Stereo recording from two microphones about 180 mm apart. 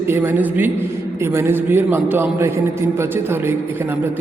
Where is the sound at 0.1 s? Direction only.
10° right (ahead or behind).